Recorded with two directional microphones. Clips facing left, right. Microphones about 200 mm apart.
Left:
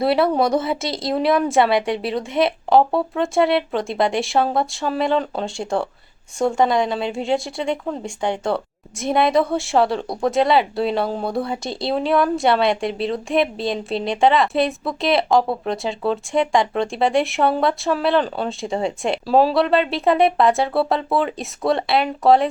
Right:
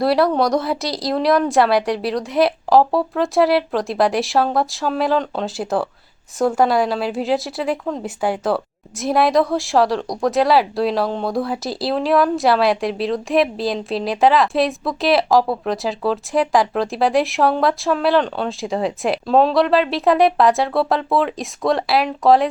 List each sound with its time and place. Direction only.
0.0 s speech: centre (ahead or behind)